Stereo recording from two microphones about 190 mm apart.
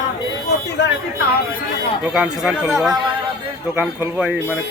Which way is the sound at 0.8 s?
65° left (ahead or behind).